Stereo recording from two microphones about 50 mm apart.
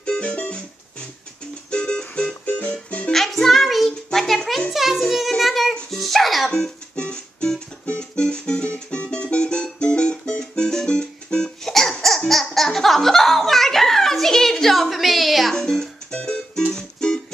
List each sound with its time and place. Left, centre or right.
0.2 s music: centre
1.7 s music: centre
2.4 s music: left
3.1 s music: centre
6.5 s music: centre
15.5 s music: centre